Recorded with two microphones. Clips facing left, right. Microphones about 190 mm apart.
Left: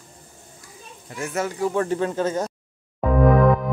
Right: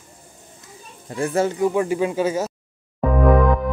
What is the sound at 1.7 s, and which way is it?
Speech, 10° right (ahead or behind).